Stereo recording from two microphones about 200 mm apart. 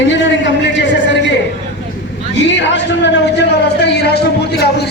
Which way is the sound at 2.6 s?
65° left (ahead or behind).